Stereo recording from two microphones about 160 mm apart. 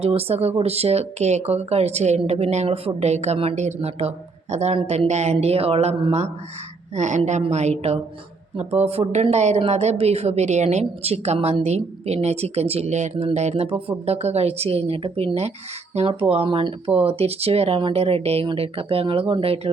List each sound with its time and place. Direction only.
0.0 s a woman's voice: 40° right (ahead or behind)